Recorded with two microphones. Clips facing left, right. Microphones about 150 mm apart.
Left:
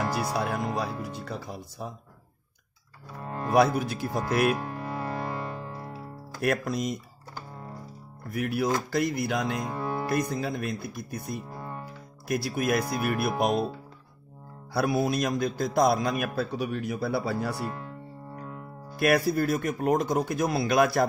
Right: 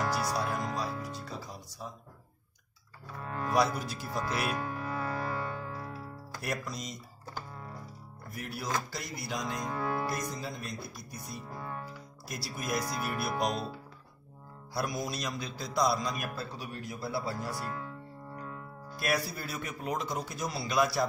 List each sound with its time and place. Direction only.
0.3 s music: 60° left (ahead or behind)
3.2 s music: 30° left (ahead or behind)
3.5 s a man's voice: 55° left (ahead or behind)
4.8 s music: 25° left (ahead or behind)
6.4 s a man's voice: 55° left (ahead or behind)
8.3 s a man's voice: 60° left (ahead or behind)
9.6 s speech: 15° left (ahead or behind)
10.3 s a man's voice: 60° left (ahead or behind)
11.5 s music: 15° left (ahead or behind)
12.3 s a man's voice: 60° left (ahead or behind)
14.7 s a man's voice: 65° left (ahead or behind)
18.3 s music: 15° left (ahead or behind)
18.9 s a man's voice: 60° left (ahead or behind)